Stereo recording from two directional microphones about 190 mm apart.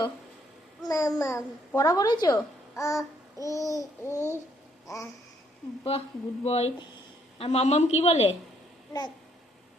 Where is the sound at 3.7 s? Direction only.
15° left (ahead or behind).